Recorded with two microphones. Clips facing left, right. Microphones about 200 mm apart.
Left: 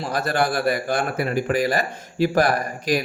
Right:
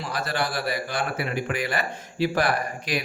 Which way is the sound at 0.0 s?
45° left (ahead or behind).